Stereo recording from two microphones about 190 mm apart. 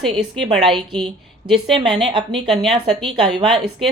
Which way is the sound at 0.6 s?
25° right (ahead or behind).